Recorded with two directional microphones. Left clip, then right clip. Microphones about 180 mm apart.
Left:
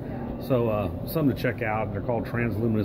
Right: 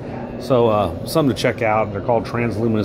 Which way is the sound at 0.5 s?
20° right (ahead or behind).